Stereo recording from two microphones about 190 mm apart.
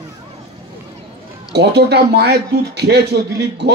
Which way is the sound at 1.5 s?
60° right (ahead or behind).